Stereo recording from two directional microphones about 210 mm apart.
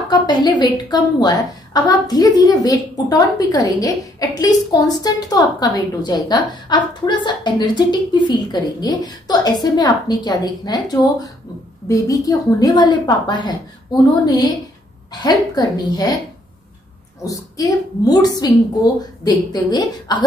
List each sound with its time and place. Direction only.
0.1 s a woman's voice: 20° left (ahead or behind)
17.2 s a woman's voice: 15° left (ahead or behind)